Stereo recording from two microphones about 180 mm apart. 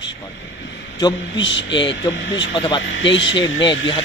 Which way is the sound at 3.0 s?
90° left.